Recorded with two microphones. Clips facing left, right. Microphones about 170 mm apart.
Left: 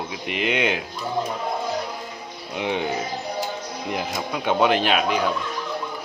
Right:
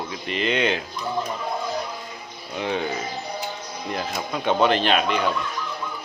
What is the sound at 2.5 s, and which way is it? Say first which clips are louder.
Speech: left 1 dB; 15° left (ahead or behind).